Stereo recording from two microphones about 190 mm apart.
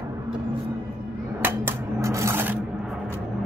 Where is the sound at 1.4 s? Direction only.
10° right (ahead or behind).